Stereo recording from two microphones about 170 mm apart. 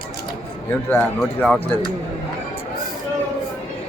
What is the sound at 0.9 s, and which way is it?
Speech, 5° left (ahead or behind).